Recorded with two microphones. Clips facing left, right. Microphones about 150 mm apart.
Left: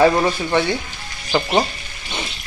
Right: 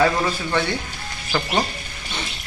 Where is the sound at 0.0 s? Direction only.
25° left (ahead or behind).